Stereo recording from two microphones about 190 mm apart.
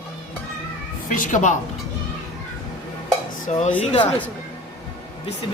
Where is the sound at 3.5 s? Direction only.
40° left (ahead or behind).